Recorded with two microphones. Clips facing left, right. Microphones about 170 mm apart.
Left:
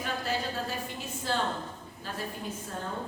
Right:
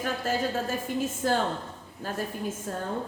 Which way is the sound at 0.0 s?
45° right (ahead or behind).